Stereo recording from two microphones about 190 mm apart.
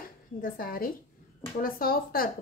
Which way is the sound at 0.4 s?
50° left (ahead or behind).